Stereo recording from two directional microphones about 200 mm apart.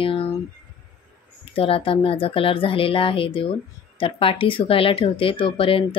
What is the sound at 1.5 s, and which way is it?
Speech, 25° left (ahead or behind).